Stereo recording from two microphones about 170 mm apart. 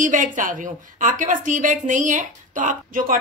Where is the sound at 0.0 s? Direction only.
50° right (ahead or behind).